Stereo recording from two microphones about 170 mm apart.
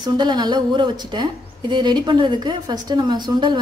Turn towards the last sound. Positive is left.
turn(degrees=-25)  # may be behind; listen again after turning